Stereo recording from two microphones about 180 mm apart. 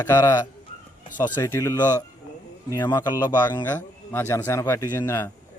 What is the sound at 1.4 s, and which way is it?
A man's voice, 15° left (ahead or behind).